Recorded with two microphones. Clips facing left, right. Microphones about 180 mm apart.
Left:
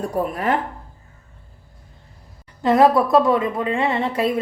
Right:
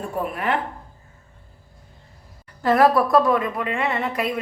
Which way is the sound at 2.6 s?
20° left (ahead or behind).